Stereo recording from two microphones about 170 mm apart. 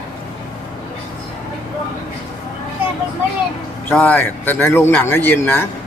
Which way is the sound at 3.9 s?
10° left (ahead or behind).